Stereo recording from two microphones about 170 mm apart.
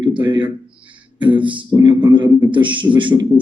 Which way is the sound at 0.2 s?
25° right (ahead or behind).